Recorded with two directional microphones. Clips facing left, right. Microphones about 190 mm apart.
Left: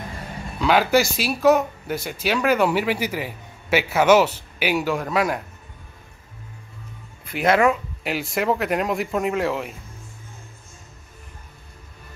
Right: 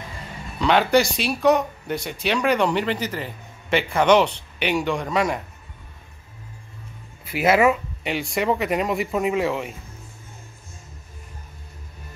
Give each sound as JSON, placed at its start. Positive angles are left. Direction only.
{"t": 0.6, "sound": "speech", "side_deg": 5}
{"t": 7.2, "sound": "speech", "side_deg": -5}